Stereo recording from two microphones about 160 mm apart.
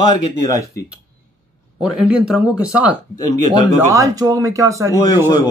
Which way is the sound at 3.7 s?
20° right (ahead or behind).